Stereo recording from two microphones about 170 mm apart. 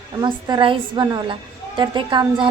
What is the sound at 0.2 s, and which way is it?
A woman's voice, 25° right (ahead or behind).